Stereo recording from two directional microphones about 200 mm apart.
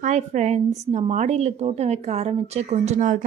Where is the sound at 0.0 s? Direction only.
35° right (ahead or behind).